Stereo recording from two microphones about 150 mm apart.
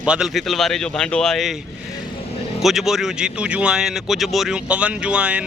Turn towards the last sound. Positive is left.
turn(degrees=-10)  # may be behind; listen again after turning